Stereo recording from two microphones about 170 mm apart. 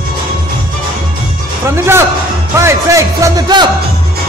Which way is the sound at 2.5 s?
15° right (ahead or behind).